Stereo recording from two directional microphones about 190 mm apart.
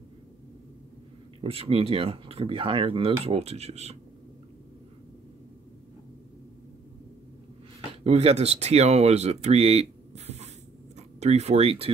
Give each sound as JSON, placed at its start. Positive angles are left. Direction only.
{"t": 1.4, "sound": "speech", "side_deg": -30}
{"t": 8.0, "sound": "speech", "side_deg": -30}